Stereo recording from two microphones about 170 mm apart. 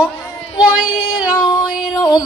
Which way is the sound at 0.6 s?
5° right (ahead or behind).